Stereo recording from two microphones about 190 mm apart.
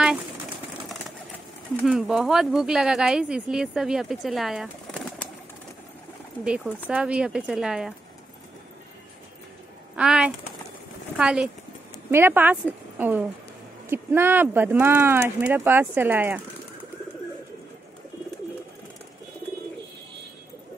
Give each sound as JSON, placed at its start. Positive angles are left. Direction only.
{"t": 1.8, "sound": "speech", "side_deg": -5}
{"t": 6.4, "sound": "speech", "side_deg": -5}
{"t": 9.9, "sound": "speech", "side_deg": -5}
{"t": 12.9, "sound": "a sound", "side_deg": -10}
{"t": 13.8, "sound": "speech", "side_deg": -10}